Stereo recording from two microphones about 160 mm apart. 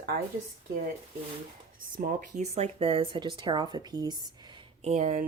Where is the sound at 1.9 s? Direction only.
60° right (ahead or behind).